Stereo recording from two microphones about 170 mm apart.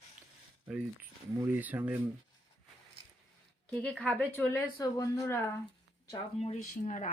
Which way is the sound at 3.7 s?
5° left (ahead or behind).